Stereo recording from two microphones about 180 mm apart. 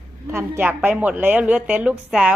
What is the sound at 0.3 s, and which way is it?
A woman's voice, 15° right (ahead or behind).